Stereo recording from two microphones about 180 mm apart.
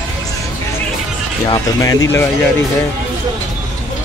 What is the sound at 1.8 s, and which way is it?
Speech, 20° left (ahead or behind).